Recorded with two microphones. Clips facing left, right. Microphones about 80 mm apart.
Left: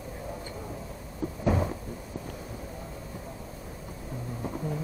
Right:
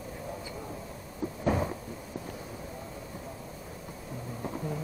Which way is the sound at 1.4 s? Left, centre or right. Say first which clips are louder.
Left 1 dB; centre.